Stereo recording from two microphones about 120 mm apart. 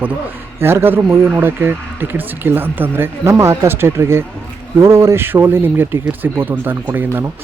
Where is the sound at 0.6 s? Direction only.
20° right (ahead or behind).